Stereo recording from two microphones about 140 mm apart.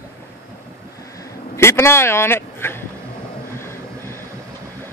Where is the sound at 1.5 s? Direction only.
20° left (ahead or behind).